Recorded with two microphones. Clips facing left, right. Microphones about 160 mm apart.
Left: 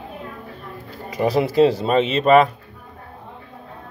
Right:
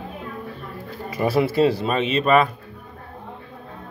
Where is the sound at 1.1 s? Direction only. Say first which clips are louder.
Left 1 dB; 20° left (ahead or behind).